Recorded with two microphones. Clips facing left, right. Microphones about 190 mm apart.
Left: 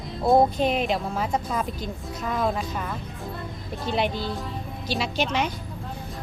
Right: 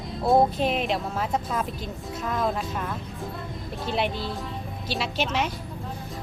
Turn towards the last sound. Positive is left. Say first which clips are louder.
# left 1 dB
turn(degrees=0)  # may be behind; listen again after turning